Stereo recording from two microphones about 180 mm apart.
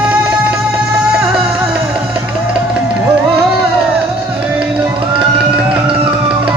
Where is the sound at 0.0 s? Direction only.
5° right (ahead or behind).